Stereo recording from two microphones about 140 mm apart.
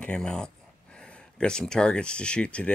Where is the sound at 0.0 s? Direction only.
5° left (ahead or behind).